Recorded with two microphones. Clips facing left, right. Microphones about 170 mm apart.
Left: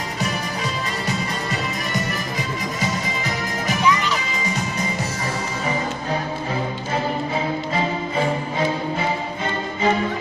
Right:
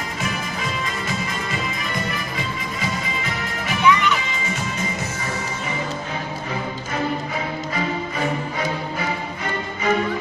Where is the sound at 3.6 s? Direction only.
35° left (ahead or behind).